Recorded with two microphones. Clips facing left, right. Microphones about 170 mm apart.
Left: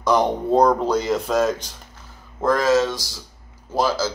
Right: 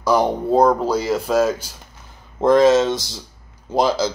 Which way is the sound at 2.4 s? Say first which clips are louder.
Right 5 dB; 20° right (ahead or behind).